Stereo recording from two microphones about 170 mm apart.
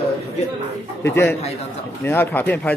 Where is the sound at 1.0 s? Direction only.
15° left (ahead or behind).